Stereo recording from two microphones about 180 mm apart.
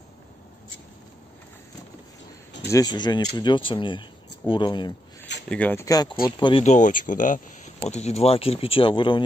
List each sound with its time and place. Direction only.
2.7 s speech: 20° left (ahead or behind)
5.5 s speech: 10° left (ahead or behind); by 6.6 s 25° left (ahead or behind)
6.6 s speech: 45° left (ahead or behind); by 9.2 s 25° left (ahead or behind)